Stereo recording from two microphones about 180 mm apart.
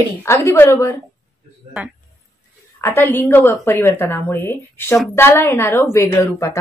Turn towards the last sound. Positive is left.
turn(degrees=15)  # may be behind; listen again after turning